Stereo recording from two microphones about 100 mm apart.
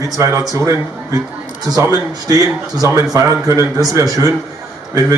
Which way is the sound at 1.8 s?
35° right (ahead or behind).